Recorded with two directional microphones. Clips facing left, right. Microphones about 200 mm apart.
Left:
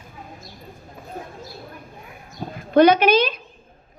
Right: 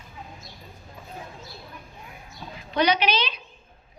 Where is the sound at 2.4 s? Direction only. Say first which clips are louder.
Left 10 dB; 50° left (ahead or behind).